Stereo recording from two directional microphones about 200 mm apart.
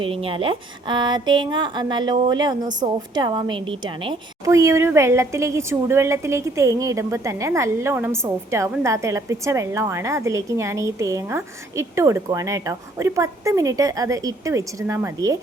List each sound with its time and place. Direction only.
0.0 s a woman's voice: 25° right (ahead or behind)